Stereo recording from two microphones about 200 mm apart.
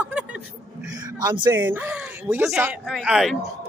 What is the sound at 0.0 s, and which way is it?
Chuckle, 5° right (ahead or behind).